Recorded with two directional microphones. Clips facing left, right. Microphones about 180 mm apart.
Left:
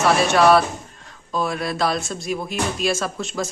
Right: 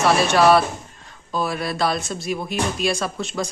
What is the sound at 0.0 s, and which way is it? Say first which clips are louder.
Speech: even; centre (ahead or behind).